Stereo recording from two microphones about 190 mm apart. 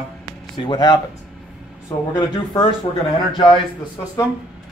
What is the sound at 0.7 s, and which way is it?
Speech, 20° left (ahead or behind).